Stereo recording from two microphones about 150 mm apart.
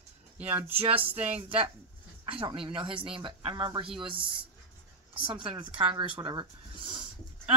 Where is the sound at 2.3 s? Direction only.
35° right (ahead or behind).